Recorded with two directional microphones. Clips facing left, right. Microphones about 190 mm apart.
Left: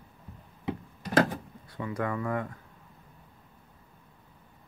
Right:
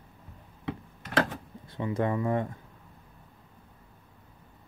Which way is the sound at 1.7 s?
25° right (ahead or behind).